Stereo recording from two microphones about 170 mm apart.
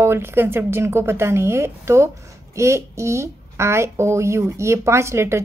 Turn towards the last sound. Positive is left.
turn(degrees=-15)  # may be behind; listen again after turning